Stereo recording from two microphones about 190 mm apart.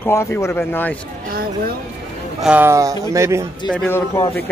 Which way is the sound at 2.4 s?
10° right (ahead or behind).